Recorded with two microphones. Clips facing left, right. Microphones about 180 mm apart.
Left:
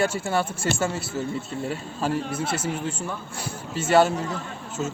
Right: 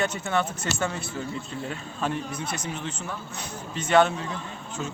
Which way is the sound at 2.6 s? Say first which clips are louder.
Left 5 dB; 5° left (ahead or behind).